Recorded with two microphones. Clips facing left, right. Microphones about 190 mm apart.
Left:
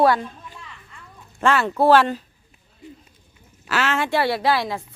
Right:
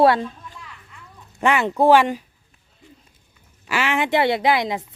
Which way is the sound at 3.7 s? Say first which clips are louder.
Right 1 dB; 15° right (ahead or behind).